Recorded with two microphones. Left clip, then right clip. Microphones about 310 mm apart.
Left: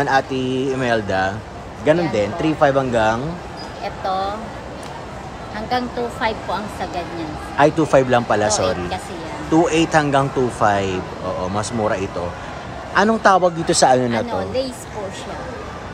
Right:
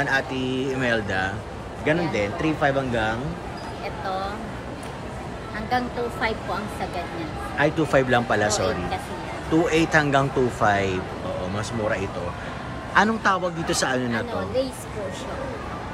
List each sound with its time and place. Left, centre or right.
0.0 s speech: centre
3.8 s a sound: left
5.7 s a woman's voice: left
7.5 s speech: centre